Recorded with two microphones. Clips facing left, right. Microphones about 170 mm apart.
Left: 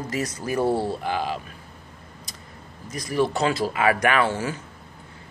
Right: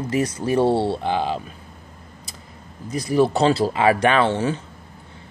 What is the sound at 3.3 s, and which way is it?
Speech, 30° right (ahead or behind).